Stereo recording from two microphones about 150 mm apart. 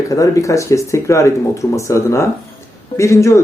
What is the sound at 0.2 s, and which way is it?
Speech, 20° left (ahead or behind).